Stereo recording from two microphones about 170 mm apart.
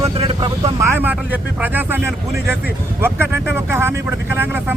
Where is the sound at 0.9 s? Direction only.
10° right (ahead or behind).